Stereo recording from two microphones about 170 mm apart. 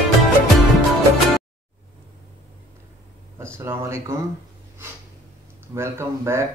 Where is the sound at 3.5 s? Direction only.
15° right (ahead or behind).